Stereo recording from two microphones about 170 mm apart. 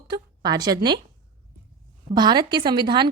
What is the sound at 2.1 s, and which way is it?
Speech, 25° right (ahead or behind).